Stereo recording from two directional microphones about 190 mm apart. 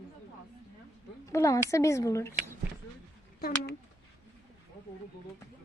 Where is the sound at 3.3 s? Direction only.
50° left (ahead or behind).